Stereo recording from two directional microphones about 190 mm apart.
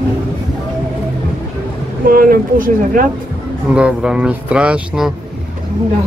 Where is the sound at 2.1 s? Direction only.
50° right (ahead or behind).